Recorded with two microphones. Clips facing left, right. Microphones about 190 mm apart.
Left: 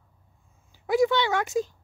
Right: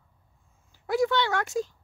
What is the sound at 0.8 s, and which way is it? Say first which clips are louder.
Speech: left 3 dB; 15° left (ahead or behind).